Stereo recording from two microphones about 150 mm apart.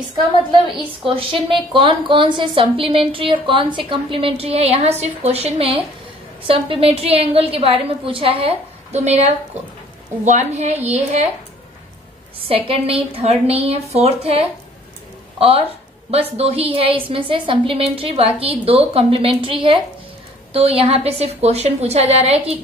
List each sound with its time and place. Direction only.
1.0 s a woman's voice: 35° right (ahead or behind)
12.4 s a woman's voice: 40° right (ahead or behind)